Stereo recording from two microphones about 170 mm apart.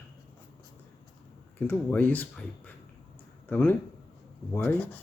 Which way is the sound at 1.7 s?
10° left (ahead or behind).